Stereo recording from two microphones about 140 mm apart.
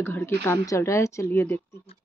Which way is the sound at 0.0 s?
15° left (ahead or behind).